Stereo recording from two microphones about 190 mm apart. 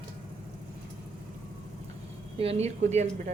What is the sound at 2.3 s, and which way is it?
Speech, 30° right (ahead or behind).